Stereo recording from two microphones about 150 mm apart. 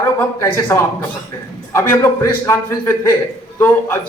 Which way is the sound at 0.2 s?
15° left (ahead or behind).